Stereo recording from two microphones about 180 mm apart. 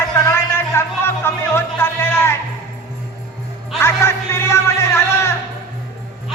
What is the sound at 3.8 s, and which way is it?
Music, 15° left (ahead or behind).